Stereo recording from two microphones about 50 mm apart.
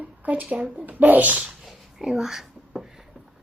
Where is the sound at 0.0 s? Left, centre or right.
Right.